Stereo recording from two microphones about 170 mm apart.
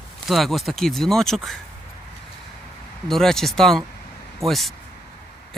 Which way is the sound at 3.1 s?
Centre (ahead or behind).